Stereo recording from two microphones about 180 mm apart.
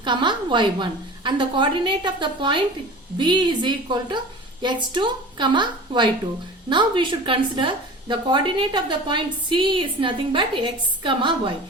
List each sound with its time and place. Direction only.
0.0 s a woman's voice: 25° right (ahead or behind)